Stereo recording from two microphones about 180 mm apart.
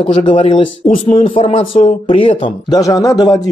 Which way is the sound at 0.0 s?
30° left (ahead or behind).